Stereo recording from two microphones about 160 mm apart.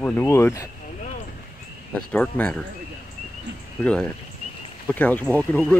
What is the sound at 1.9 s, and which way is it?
Speech, 5° left (ahead or behind).